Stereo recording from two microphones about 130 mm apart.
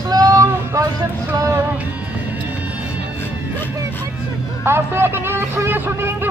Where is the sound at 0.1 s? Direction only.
25° right (ahead or behind).